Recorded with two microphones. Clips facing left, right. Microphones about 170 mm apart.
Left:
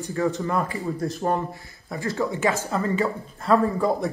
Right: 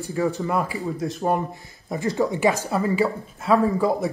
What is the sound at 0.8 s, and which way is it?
Speech, centre (ahead or behind).